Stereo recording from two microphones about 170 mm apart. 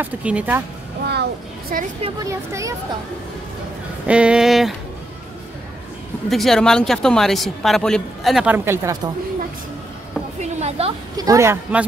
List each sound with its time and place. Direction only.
0.0 s speech: 5° right (ahead or behind)
1.0 s music: 75° right (ahead or behind)
2.2 s speech: 15° right (ahead or behind)
4.1 s speech: 5° right (ahead or behind)
6.3 s speech: centre (ahead or behind); by 9.1 s 15° right (ahead or behind)
10.4 s a sound: 40° right (ahead or behind)
11.1 s speech: 20° right (ahead or behind)